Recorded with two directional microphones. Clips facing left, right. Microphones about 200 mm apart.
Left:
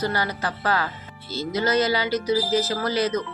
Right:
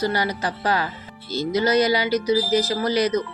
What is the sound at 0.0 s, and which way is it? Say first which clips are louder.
A woman's voice: right 2 dB; 15° right (ahead or behind).